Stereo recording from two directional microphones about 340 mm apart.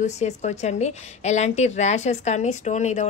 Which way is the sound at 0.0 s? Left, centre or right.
Centre.